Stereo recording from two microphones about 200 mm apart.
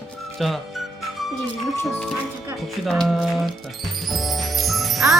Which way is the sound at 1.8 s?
5° left (ahead or behind).